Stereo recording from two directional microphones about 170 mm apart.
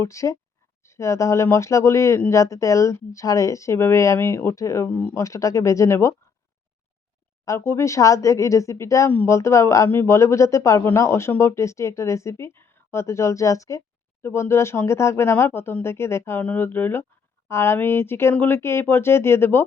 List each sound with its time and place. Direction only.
0.0 s speech: 20° left (ahead or behind)
7.4 s speech: 15° left (ahead or behind)